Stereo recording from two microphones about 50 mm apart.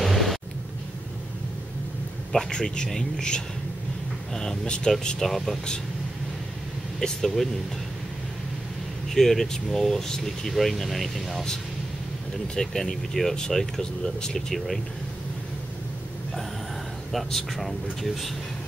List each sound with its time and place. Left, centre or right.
0.0 s a sound: centre
2.3 s speech: centre
7.0 s speech: centre
9.1 s speech: centre
12.5 s speech: centre
17.1 s speech: centre